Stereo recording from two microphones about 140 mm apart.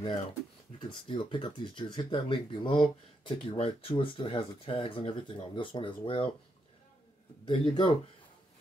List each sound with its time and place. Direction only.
0.7 s speech: 40° left (ahead or behind)
7.4 s speech: 35° left (ahead or behind)